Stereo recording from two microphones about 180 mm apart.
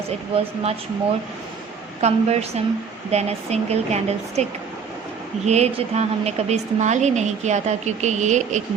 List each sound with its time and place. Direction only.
2.0 s a woman's voice: 35° right (ahead or behind)
5.5 s a woman's voice: 35° right (ahead or behind)